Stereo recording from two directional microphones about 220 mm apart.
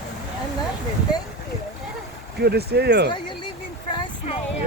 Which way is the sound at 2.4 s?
45° right (ahead or behind).